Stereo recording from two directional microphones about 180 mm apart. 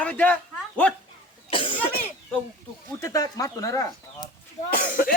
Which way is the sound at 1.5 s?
30° left (ahead or behind).